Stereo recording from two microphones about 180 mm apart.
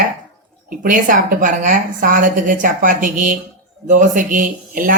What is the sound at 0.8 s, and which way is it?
A woman's voice, 45° right (ahead or behind).